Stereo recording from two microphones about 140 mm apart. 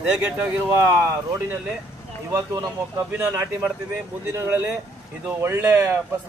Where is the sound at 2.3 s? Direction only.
25° right (ahead or behind).